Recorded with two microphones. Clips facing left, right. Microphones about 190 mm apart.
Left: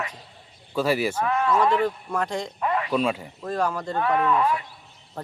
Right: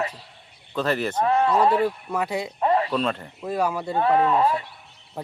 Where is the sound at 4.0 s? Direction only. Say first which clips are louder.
Right 3 dB; 30° right (ahead or behind).